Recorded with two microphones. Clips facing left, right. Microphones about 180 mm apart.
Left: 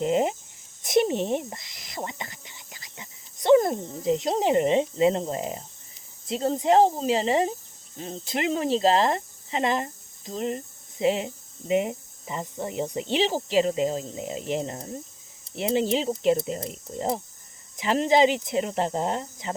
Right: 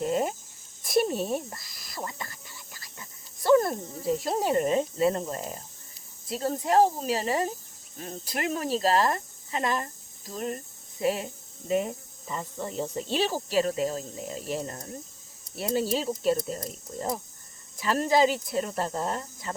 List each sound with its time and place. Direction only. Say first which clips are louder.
0.0 s speech: left 4 dB; 20° left (ahead or behind)